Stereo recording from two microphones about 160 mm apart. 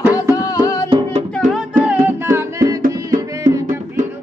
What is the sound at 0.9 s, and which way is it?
Music, 40° right (ahead or behind).